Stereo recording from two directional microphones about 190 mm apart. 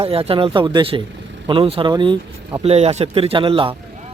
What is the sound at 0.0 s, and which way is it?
Speech, 30° right (ahead or behind).